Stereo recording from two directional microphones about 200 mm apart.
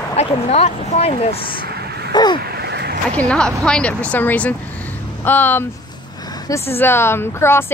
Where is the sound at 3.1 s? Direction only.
5° left (ahead or behind).